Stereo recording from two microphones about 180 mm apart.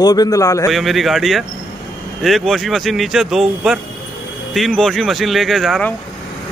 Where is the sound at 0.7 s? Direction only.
Centre (ahead or behind).